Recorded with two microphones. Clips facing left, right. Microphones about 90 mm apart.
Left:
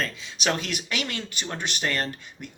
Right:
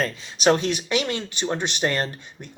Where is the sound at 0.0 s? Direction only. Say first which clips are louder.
Right 7 dB; 30° right (ahead or behind).